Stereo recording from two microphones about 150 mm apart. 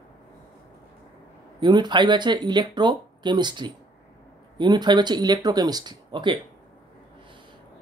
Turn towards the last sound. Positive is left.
turn(degrees=-30)  # may be behind; listen again after turning